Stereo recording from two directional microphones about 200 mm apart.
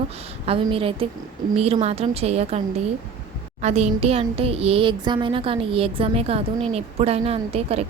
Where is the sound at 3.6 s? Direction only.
35° right (ahead or behind).